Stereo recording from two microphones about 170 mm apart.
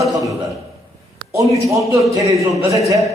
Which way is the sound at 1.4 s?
20° right (ahead or behind).